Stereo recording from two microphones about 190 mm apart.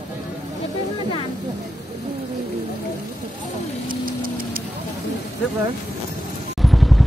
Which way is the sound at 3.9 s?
45° right (ahead or behind).